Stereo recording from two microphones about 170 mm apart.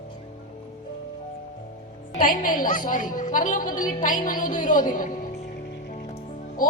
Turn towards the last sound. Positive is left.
turn(degrees=55)  # may be behind; listen again after turning